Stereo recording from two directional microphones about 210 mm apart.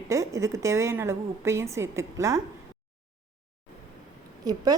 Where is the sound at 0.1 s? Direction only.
15° right (ahead or behind).